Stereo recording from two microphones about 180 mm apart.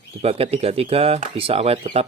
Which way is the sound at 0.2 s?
35° right (ahead or behind).